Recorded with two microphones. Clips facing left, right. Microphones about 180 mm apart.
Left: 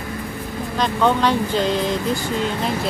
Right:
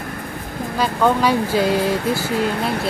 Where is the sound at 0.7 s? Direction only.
5° right (ahead or behind).